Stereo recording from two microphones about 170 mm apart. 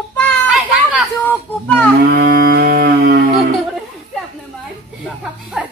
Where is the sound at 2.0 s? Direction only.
90° right.